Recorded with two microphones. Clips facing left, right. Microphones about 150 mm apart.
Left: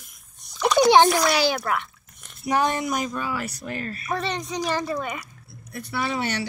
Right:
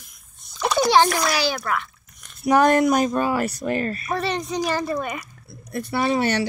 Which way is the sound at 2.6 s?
60° right (ahead or behind).